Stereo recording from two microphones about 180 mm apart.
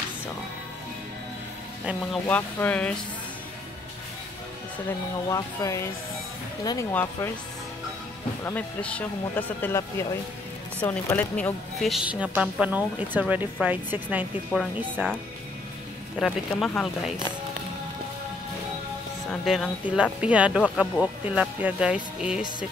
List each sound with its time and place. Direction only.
2.2 s speech: 10° left (ahead or behind)
5.3 s speech: 20° left (ahead or behind)
6.9 s speech: 10° left (ahead or behind)
8.5 s a woman's voice: 10° left (ahead or behind); by 15.1 s 10° right (ahead or behind)
16.2 s speech: centre (ahead or behind)
19.2 s speech: centre (ahead or behind)